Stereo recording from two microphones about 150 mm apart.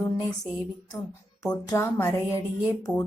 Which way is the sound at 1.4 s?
25° left (ahead or behind).